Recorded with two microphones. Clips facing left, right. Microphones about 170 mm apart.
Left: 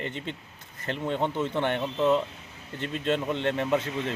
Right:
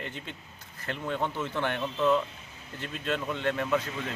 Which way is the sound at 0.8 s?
20° left (ahead or behind).